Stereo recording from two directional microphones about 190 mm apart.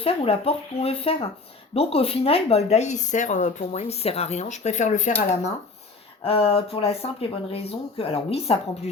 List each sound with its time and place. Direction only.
0.0 s speech: 30° left (ahead or behind)